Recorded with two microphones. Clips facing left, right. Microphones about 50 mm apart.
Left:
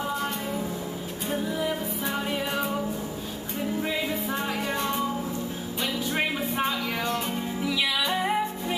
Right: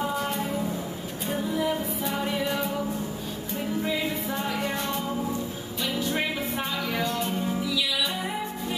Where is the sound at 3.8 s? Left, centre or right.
Centre.